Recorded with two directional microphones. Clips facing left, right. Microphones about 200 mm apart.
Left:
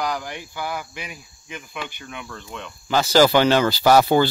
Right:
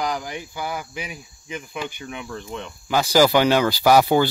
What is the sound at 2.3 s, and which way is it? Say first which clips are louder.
Speech: right 4 dB; 35° right (ahead or behind).